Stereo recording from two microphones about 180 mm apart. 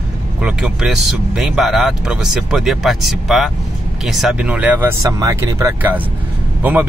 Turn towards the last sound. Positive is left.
turn(degrees=-10)  # may be behind; listen again after turning